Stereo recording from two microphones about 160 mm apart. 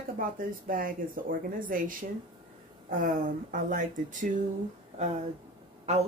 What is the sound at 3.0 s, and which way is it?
Speech, 55° right (ahead or behind).